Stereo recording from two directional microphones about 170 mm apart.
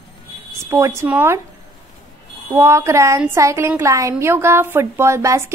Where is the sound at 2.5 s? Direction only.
15° right (ahead or behind).